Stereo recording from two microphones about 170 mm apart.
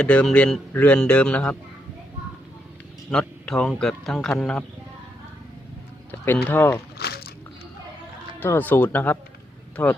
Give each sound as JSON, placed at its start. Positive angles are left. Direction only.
{"t": 0.0, "sound": "a man's voice", "side_deg": 5}
{"t": 3.1, "sound": "speech", "side_deg": 5}
{"t": 6.1, "sound": "speech", "side_deg": 10}
{"t": 7.0, "sound": "a sound", "side_deg": 70}
{"t": 8.4, "sound": "a man's voice", "side_deg": 10}